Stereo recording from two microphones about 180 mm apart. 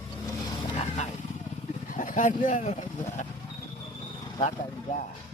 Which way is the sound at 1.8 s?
50° left (ahead or behind).